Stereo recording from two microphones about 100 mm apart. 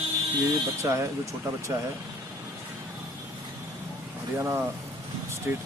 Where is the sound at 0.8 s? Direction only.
30° right (ahead or behind).